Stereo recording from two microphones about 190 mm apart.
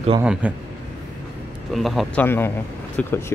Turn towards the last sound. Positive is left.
turn(degrees=5)  # may be behind; listen again after turning